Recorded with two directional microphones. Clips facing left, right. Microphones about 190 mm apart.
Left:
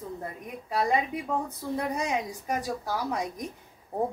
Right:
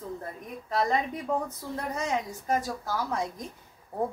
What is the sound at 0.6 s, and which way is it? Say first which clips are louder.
A woman's voice: left 1 dB; 10° left (ahead or behind).